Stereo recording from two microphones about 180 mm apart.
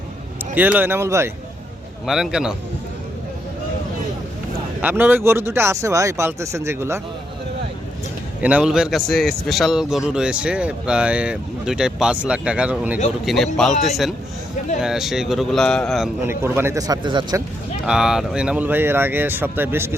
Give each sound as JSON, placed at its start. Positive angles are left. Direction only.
{"t": 0.5, "sound": "speech", "side_deg": -10}
{"t": 2.0, "sound": "a man's voice", "side_deg": 0}
{"t": 4.8, "sound": "speech", "side_deg": -10}
{"t": 8.4, "sound": "a man's voice", "side_deg": -5}
{"t": 16.2, "sound": "speech", "side_deg": -15}
{"t": 17.8, "sound": "speech", "side_deg": -5}